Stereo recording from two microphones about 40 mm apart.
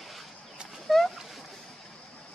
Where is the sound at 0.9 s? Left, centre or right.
Centre.